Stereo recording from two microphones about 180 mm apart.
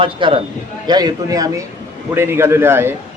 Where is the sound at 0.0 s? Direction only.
30° right (ahead or behind).